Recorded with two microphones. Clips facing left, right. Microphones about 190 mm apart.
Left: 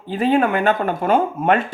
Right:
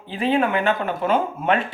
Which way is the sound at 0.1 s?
45° left (ahead or behind).